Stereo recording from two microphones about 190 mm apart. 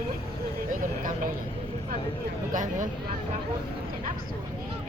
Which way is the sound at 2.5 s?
40° right (ahead or behind).